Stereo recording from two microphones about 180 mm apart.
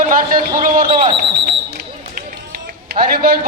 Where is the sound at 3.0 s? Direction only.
55° right (ahead or behind).